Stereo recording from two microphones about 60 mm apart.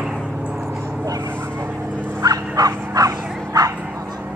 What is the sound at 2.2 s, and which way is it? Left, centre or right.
Bow-wow, right.